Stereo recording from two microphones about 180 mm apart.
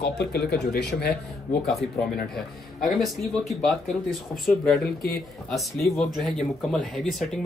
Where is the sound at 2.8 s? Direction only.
Centre (ahead or behind).